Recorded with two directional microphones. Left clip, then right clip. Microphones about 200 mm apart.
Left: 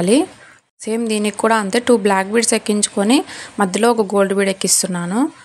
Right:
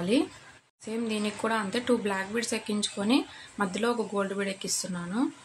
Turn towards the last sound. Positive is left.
turn(degrees=45)  # may be behind; listen again after turning